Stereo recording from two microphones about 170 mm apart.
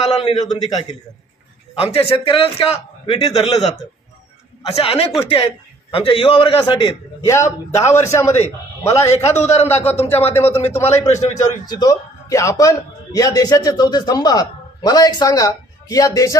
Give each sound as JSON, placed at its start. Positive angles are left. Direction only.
{"t": 0.0, "sound": "a man's voice", "side_deg": 35}
{"t": 1.8, "sound": "a man's voice", "side_deg": 35}
{"t": 6.8, "sound": "a man's voice", "side_deg": 15}
{"t": 9.8, "sound": "a man's voice", "side_deg": 40}
{"t": 10.0, "sound": "a man's voice", "side_deg": 15}
{"t": 10.6, "sound": "a man's voice", "side_deg": 40}
{"t": 11.6, "sound": "a man's voice", "side_deg": 20}